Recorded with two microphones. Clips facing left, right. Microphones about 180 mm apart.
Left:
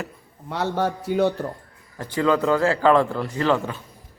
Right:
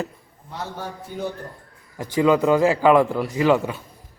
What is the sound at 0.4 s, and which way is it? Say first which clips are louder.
A man's voice: left 8 dB; 75° left (ahead or behind).